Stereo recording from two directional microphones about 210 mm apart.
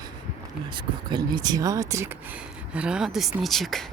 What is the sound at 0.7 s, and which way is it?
Speech, 20° right (ahead or behind).